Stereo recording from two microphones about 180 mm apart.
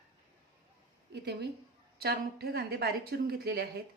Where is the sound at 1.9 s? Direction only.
60° right (ahead or behind).